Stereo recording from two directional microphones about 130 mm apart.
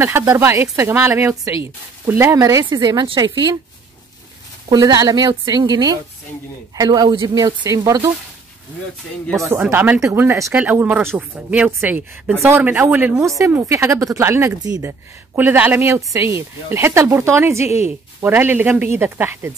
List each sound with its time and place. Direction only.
0.0 s a woman's voice: 20° right (ahead or behind); by 3.5 s 40° right (ahead or behind)
4.6 s a woman's voice: 30° right (ahead or behind)
9.5 s a woman's voice: 15° right (ahead or behind)